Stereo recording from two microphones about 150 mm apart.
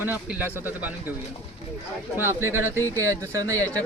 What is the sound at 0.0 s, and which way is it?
Speech, 10° right (ahead or behind).